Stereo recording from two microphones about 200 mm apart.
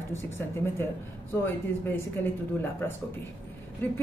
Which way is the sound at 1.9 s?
10° left (ahead or behind).